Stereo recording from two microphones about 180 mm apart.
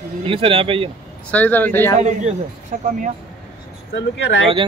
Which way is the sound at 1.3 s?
10° left (ahead or behind).